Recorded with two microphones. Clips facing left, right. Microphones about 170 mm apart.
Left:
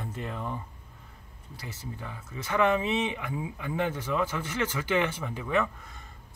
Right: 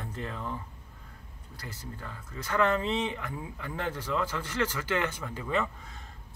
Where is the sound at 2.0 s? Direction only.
10° left (ahead or behind).